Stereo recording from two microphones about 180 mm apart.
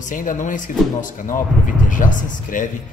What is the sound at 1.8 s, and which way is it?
Speech, 45° left (ahead or behind).